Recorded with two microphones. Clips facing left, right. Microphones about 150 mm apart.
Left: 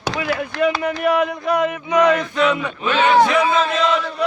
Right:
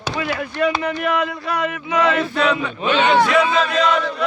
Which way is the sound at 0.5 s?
90° left.